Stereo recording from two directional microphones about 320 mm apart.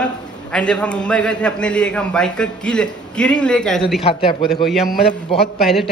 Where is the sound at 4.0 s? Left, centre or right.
Centre.